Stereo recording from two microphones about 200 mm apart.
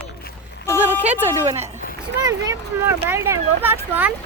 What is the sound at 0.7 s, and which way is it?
Speech, 10° right (ahead or behind).